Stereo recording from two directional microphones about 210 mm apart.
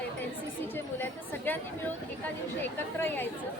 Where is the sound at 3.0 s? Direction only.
10° left (ahead or behind).